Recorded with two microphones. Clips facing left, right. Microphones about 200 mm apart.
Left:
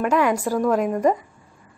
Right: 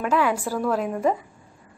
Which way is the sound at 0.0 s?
10° left (ahead or behind).